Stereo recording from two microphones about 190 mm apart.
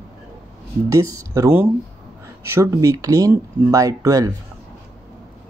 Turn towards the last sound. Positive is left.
turn(degrees=-15)  # may be behind; listen again after turning